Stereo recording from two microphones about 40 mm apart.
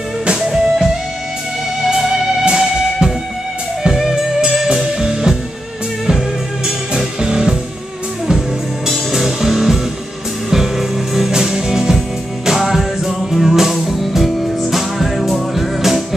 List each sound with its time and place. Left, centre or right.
0.4 s music: centre
1.9 s music: centre
8.8 s music: centre
12.4 s music: centre